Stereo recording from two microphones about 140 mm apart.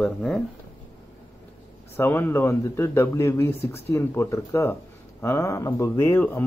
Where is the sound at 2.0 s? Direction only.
15° left (ahead or behind).